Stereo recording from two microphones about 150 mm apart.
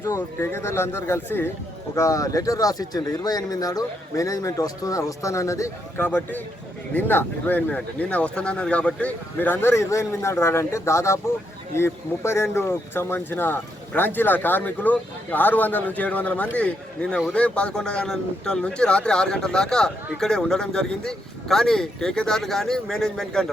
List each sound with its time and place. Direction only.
0.0 s speech: 15° left (ahead or behind)